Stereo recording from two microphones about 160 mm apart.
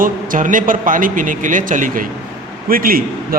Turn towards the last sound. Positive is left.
turn(degrees=-65)  # may be behind; listen again after turning